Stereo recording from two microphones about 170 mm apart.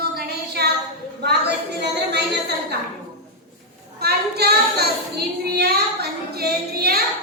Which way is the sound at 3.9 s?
70° right (ahead or behind).